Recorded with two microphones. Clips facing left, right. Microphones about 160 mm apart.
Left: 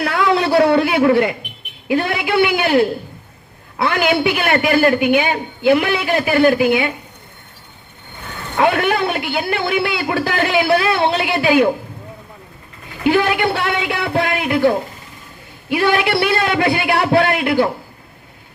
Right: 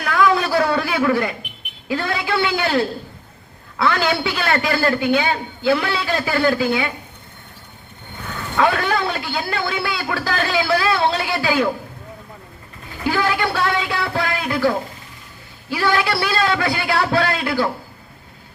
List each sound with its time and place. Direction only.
0.0 s a sound: 25° left (ahead or behind)
1.9 s a man's voice: 20° left (ahead or behind)
8.5 s a man's voice: 20° left (ahead or behind)
13.1 s a man's voice: 20° left (ahead or behind)